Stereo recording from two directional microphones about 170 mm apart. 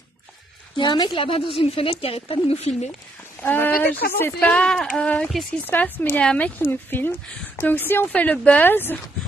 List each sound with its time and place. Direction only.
0.7 s a woman's voice: 25° left (ahead or behind)
3.4 s a woman's voice: 10° left (ahead or behind)